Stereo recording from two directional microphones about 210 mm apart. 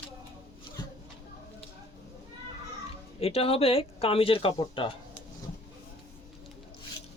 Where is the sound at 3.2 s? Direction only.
30° left (ahead or behind).